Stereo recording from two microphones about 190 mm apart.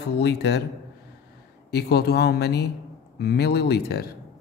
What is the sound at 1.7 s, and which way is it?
Speech, 55° left (ahead or behind).